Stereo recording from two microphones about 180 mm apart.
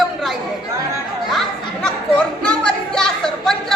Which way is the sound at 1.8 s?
5° left (ahead or behind).